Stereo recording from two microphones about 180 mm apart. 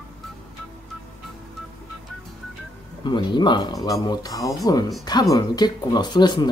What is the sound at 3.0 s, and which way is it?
Speech, 25° left (ahead or behind).